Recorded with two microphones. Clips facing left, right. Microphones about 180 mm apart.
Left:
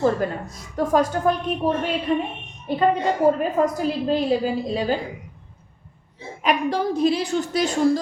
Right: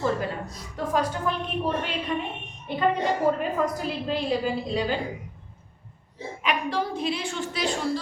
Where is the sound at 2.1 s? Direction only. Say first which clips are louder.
Left 7 dB; 35° left (ahead or behind).